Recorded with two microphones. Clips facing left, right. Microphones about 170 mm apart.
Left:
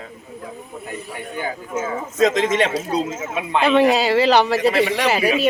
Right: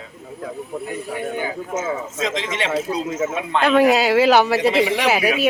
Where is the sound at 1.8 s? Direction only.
45° left (ahead or behind).